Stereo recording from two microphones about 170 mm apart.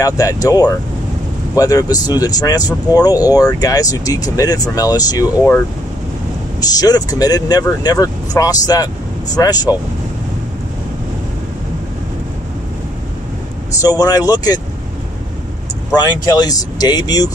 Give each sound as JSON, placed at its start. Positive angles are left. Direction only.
{"t": 0.0, "sound": "speech", "side_deg": 20}
{"t": 6.6, "sound": "speech", "side_deg": 20}
{"t": 13.7, "sound": "speech", "side_deg": 20}
{"t": 15.9, "sound": "speech", "side_deg": 25}